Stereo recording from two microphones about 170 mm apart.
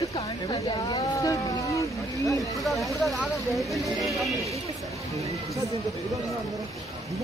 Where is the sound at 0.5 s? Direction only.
25° left (ahead or behind).